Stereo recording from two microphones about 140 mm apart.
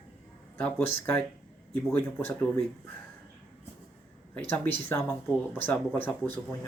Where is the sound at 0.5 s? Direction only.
10° left (ahead or behind).